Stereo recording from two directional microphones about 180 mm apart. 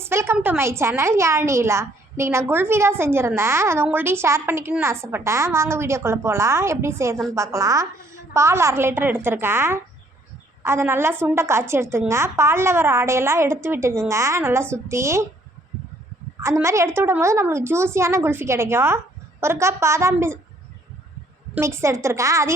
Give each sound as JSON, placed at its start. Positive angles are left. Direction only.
{"t": 0.0, "sound": "a woman's voice", "side_deg": -15}
{"t": 16.4, "sound": "a woman's voice", "side_deg": -15}
{"t": 21.5, "sound": "a woman's voice", "side_deg": -15}